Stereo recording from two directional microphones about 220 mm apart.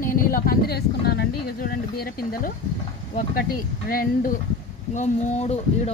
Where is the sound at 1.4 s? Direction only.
45° left (ahead or behind).